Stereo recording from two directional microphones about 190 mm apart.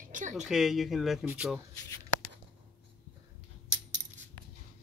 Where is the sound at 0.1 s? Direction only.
40° right (ahead or behind).